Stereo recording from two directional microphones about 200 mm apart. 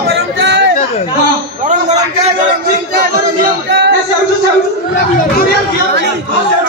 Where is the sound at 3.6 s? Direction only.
60° right (ahead or behind).